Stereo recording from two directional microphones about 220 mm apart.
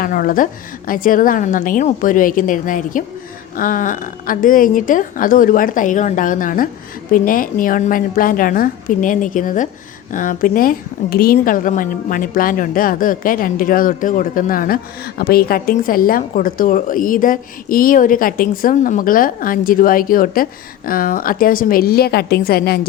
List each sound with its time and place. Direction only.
0.0 s a woman's voice: 40° left (ahead or behind)